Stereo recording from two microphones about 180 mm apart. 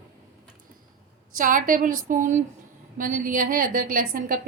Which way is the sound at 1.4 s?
50° right (ahead or behind).